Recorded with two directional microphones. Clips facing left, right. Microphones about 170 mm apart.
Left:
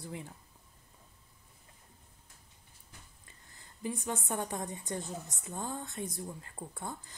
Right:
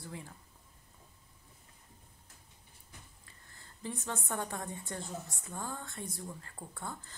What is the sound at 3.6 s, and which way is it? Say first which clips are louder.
A woman's voice: left 4 dB; 15° left (ahead or behind).